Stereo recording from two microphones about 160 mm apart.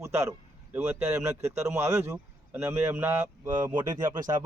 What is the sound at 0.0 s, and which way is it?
Speech, 20° right (ahead or behind).